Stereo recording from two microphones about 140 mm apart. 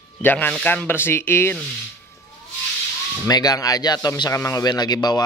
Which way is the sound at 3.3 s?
30° left (ahead or behind).